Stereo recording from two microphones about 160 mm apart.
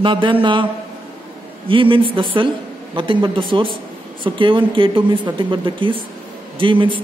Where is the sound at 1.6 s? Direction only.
35° right (ahead or behind).